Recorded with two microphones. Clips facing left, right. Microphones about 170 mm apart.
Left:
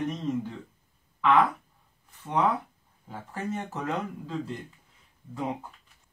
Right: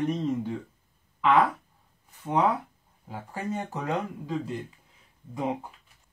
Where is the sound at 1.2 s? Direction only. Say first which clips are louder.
Even; 10° right (ahead or behind).